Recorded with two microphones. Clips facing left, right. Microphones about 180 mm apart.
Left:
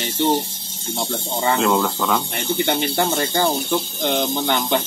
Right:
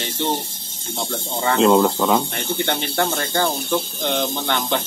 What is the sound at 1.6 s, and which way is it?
Speech, 25° right (ahead or behind).